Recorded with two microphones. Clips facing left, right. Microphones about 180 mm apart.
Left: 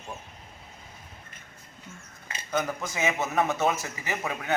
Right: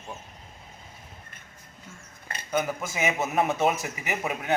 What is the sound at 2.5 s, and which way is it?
A man's voice, 10° right (ahead or behind).